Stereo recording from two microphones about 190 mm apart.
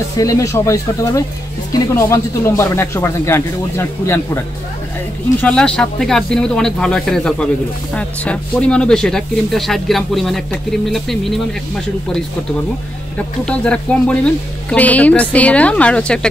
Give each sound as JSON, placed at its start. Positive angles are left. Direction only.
{"t": 0.2, "sound": "speech", "side_deg": 15}
{"t": 13.5, "sound": "speech", "side_deg": 5}